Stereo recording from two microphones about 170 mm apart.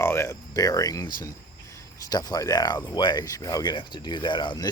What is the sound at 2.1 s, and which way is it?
Speech, 20° left (ahead or behind).